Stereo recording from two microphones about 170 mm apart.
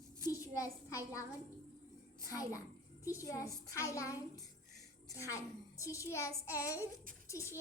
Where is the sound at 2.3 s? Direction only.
20° left (ahead or behind).